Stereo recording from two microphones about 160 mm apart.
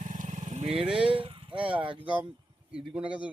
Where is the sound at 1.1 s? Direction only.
35° right (ahead or behind).